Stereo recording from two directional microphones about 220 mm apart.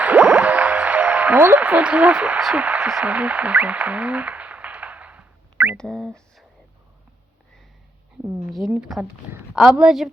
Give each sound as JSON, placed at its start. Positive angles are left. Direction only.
{"t": 0.0, "sound": "music", "side_deg": -5}
{"t": 5.7, "sound": "a woman's voice", "side_deg": 5}
{"t": 8.2, "sound": "speech", "side_deg": -15}
{"t": 8.4, "sound": "a woman's voice", "side_deg": 0}